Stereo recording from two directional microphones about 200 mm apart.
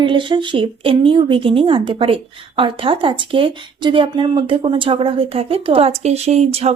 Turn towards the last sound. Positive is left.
turn(degrees=-30)  # may be behind; listen again after turning